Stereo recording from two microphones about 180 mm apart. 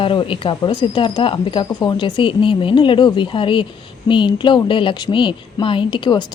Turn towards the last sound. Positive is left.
turn(degrees=25)  # may be behind; listen again after turning